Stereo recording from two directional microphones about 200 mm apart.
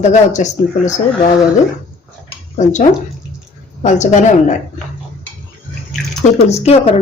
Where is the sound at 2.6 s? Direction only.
35° left (ahead or behind).